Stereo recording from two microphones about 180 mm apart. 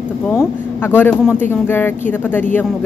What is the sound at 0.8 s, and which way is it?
A woman's voice, 10° left (ahead or behind).